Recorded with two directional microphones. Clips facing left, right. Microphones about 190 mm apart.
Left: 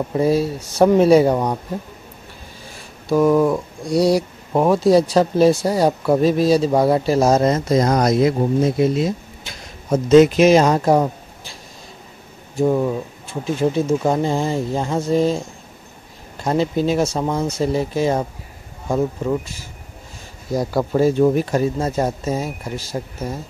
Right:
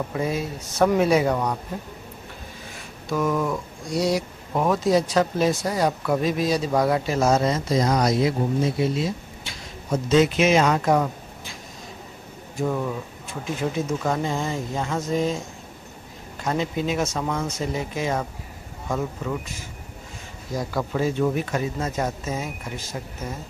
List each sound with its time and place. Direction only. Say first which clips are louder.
0.1 s speech: left 9 dB; 30° left (ahead or behind)
3.1 s speech: left 9 dB; 30° left (ahead or behind); by 10.4 s 50° left (ahead or behind)
10.4 s speech: left 6 dB; 35° left (ahead or behind)
12.5 s speech: left 8 dB; 25° left (ahead or behind)
16.4 s speech: left 6 dB; 35° left (ahead or behind)
20.5 s speech: left 7 dB; 35° left (ahead or behind)